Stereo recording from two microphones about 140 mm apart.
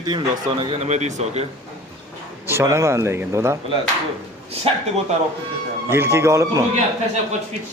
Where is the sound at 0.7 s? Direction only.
55° right (ahead or behind).